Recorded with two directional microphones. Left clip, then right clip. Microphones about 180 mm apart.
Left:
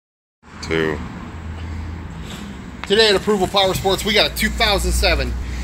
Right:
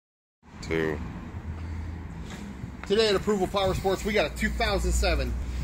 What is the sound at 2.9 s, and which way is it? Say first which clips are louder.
Speech: left 9 dB; 55° right (ahead or behind).